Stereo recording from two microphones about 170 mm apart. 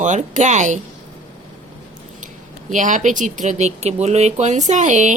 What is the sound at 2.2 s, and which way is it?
Speech, 50° right (ahead or behind).